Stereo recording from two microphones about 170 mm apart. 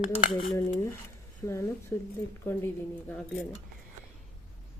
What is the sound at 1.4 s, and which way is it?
Speech, 15° left (ahead or behind).